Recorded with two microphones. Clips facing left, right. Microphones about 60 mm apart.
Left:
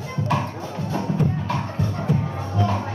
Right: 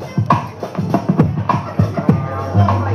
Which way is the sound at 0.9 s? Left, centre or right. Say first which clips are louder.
Right 8 dB; right.